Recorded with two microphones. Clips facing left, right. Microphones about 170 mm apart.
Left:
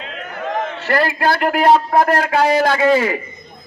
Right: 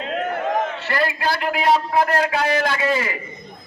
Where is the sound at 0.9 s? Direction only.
50° left (ahead or behind).